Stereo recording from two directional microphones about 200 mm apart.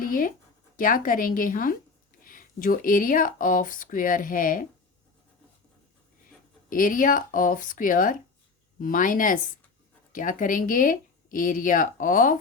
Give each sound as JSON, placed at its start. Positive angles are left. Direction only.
{"t": 0.0, "sound": "speech", "side_deg": 45}
{"t": 6.7, "sound": "speech", "side_deg": 45}